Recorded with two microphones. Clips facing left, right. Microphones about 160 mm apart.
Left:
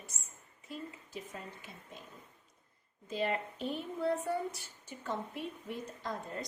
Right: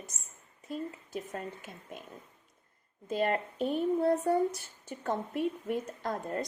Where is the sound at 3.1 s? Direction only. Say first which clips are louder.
Right 5 dB; 50° right (ahead or behind).